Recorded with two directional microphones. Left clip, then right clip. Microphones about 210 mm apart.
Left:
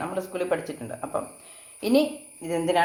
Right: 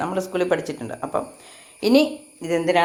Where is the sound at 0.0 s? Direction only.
30° right (ahead or behind).